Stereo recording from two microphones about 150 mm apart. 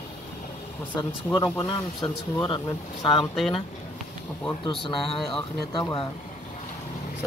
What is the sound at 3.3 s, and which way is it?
Speech, centre (ahead or behind).